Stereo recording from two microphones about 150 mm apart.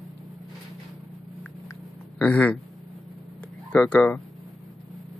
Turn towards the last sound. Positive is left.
turn(degrees=10)  # may be behind; listen again after turning